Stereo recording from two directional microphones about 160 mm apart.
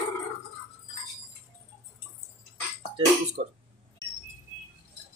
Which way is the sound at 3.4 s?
50° right (ahead or behind).